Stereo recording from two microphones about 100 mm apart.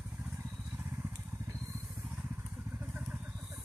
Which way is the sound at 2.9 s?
10° right (ahead or behind).